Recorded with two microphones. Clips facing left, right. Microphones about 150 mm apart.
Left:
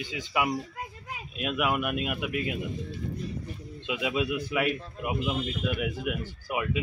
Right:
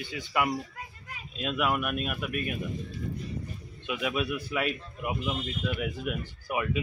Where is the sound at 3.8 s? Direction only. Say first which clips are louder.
Left 1 dB; 15° left (ahead or behind).